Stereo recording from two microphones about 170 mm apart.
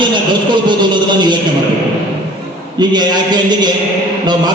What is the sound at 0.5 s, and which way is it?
Speech, 25° right (ahead or behind).